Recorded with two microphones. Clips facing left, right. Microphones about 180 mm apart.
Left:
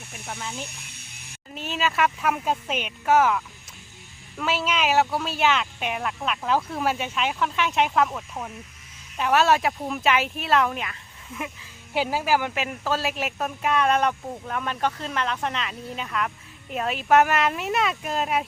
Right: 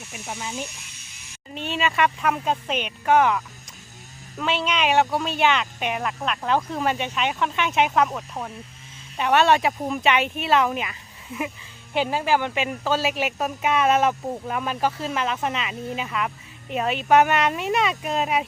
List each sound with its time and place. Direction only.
0.7 s a sound: 55° left (ahead or behind)
1.5 s speech: centre (ahead or behind)
11.9 s speech: 5° left (ahead or behind)